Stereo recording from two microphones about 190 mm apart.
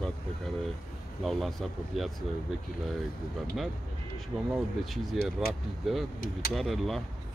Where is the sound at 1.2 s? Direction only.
Centre (ahead or behind).